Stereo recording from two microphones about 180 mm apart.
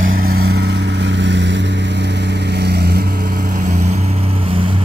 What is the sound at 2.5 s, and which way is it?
Vehicle, 65° right (ahead or behind).